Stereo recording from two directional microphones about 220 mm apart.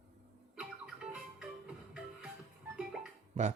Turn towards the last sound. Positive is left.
turn(degrees=-30)  # may be behind; listen again after turning